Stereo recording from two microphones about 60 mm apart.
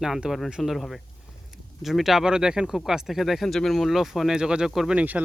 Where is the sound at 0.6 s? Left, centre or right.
Centre.